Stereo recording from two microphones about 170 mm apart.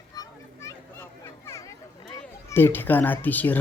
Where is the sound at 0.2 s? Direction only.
15° left (ahead or behind).